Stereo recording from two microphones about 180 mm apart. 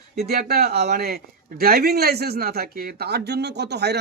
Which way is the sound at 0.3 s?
60° right (ahead or behind).